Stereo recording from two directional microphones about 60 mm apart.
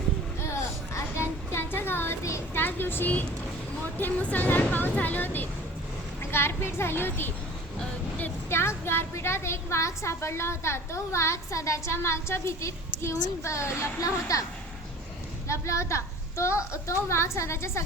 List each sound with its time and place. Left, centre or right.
0.4 s a sound: left
3.8 s speech: left
8.4 s a woman's voice: left
15.4 s a woman's voice: left